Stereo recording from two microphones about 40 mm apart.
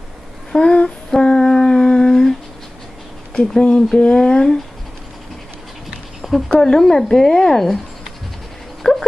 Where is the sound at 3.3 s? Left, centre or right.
Centre.